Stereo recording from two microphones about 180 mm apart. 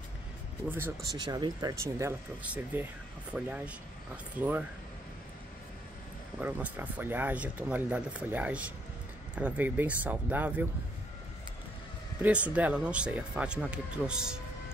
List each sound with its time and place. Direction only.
0.7 s speech: 10° right (ahead or behind)
1.1 s speech: 25° right (ahead or behind)
6.4 s speech: 10° right (ahead or behind)
12.2 s speech: 5° right (ahead or behind)